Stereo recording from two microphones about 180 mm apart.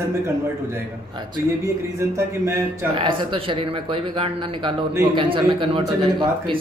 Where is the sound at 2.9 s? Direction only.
30° right (ahead or behind).